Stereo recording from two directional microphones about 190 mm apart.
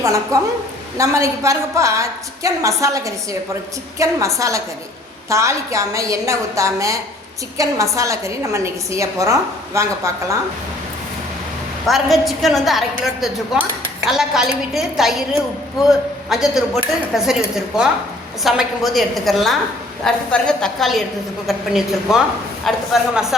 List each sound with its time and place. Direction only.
0.3 s a woman's voice: 15° right (ahead or behind)
11.9 s speech: centre (ahead or behind)